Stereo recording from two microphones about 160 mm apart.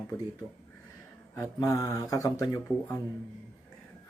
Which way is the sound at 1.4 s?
20° left (ahead or behind).